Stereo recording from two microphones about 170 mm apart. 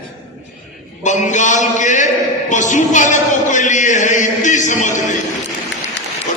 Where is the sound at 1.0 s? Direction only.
45° left (ahead or behind).